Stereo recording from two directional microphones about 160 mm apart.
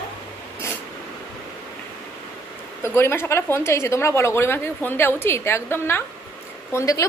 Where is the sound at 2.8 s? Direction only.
15° left (ahead or behind).